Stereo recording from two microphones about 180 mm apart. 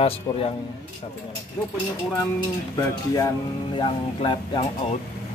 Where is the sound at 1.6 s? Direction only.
10° left (ahead or behind).